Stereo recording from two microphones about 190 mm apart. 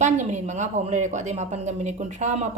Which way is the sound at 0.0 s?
40° right (ahead or behind).